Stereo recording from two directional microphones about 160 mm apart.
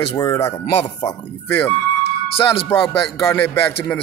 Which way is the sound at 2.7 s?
15° left (ahead or behind).